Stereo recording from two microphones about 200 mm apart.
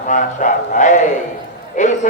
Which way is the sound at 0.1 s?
40° left (ahead or behind).